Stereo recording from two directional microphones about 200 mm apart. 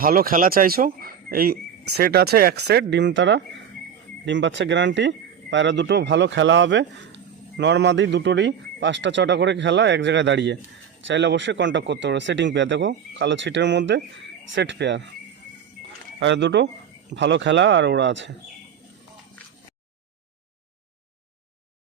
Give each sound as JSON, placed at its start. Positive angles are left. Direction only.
{"t": 0.0, "sound": "speech", "side_deg": -45}
{"t": 16.2, "sound": "speech", "side_deg": -60}